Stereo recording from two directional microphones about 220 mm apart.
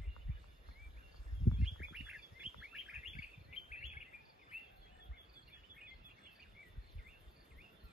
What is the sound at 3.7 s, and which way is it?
Bird vocalization, 35° left (ahead or behind).